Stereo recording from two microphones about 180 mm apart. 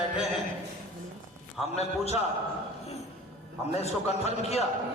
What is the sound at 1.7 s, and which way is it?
Speech, 35° left (ahead or behind).